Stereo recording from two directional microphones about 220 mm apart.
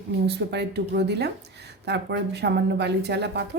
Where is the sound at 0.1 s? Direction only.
50° right (ahead or behind).